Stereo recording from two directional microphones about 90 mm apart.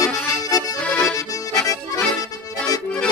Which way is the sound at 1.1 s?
40° left (ahead or behind).